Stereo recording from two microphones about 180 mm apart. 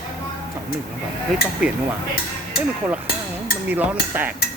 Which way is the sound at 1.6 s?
5° right (ahead or behind).